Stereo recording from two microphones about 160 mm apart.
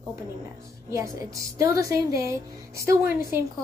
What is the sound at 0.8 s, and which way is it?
A woman's voice, 20° right (ahead or behind).